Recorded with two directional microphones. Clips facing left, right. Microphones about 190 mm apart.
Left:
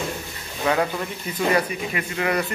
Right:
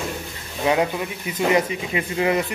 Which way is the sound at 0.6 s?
15° right (ahead or behind).